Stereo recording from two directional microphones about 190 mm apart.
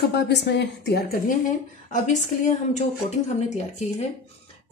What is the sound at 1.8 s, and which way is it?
Speech, 40° left (ahead or behind).